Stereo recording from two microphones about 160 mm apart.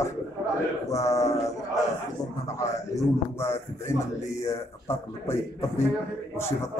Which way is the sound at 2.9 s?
15° left (ahead or behind).